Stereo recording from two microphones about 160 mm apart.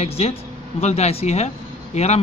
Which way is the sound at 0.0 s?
40° left (ahead or behind).